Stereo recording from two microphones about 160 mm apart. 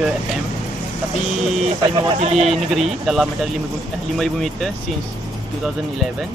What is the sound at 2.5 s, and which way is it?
Speech, centre (ahead or behind).